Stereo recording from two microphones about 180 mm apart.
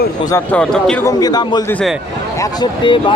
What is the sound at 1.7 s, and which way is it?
Speech, 5° left (ahead or behind).